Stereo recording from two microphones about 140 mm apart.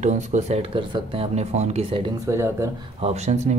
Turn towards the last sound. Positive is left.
turn(degrees=-55)  # may be behind; listen again after turning